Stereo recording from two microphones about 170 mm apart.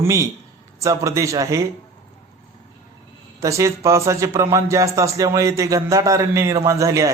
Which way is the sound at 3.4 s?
20° right (ahead or behind).